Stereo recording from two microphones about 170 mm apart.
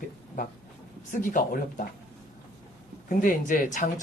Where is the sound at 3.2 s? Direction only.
55° left (ahead or behind).